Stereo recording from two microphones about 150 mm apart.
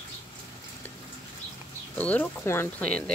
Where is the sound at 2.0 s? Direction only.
10° left (ahead or behind).